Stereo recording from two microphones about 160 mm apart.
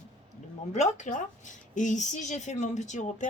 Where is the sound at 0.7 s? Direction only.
45° left (ahead or behind).